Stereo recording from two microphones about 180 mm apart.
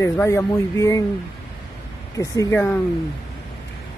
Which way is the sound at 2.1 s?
15° left (ahead or behind).